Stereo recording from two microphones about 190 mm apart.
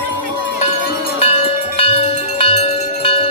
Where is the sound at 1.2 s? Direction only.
30° left (ahead or behind).